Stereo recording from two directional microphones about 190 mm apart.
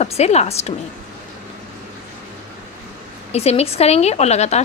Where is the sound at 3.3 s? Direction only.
35° left (ahead or behind).